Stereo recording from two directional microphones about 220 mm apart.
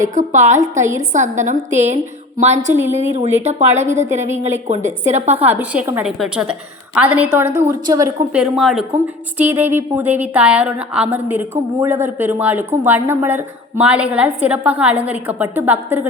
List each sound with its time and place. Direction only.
0.1 s a woman's voice: 35° right (ahead or behind)
0.7 s a woman's voice: 15° right (ahead or behind)
0.9 s a woman's voice: 35° right (ahead or behind)
5.4 s a woman's voice: 10° right (ahead or behind)
8.4 s a woman's voice: centre (ahead or behind)